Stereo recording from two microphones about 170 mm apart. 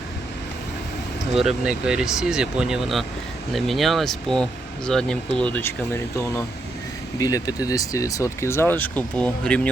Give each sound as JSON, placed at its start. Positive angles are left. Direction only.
{"t": 1.3, "sound": "speech", "side_deg": 0}